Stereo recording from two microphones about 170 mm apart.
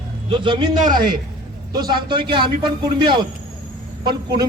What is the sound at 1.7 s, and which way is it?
A man's voice, 25° right (ahead or behind).